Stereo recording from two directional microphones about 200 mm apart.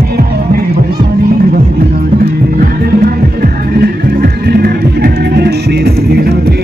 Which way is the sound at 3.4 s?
50° right (ahead or behind).